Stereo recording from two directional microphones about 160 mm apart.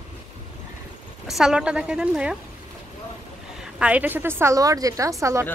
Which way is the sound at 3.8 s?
10° right (ahead or behind).